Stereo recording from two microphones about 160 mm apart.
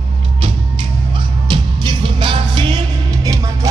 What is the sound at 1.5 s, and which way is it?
Music, 30° right (ahead or behind).